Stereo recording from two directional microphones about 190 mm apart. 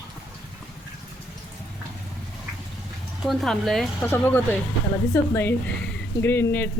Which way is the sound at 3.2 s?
Centre (ahead or behind).